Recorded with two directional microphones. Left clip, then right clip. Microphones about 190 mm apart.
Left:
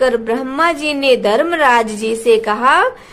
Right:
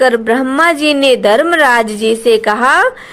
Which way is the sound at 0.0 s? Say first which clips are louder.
Right 4 dB; 25° right (ahead or behind).